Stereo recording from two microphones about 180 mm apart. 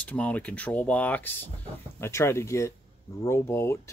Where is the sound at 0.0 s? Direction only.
10° left (ahead or behind).